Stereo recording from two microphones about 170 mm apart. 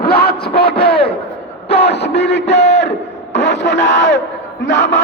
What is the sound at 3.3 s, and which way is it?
Speech, 90° left.